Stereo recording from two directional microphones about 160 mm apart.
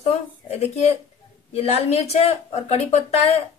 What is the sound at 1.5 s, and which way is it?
Speech, 40° left (ahead or behind).